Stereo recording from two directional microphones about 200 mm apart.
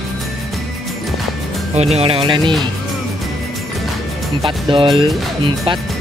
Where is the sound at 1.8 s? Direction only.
30° right (ahead or behind).